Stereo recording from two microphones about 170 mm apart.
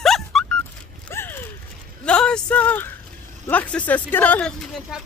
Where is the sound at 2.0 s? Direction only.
5° left (ahead or behind).